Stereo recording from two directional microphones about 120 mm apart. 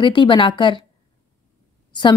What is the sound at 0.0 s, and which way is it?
Speech, 40° left (ahead or behind).